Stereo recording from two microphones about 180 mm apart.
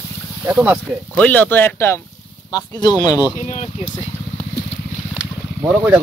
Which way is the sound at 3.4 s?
40° left (ahead or behind).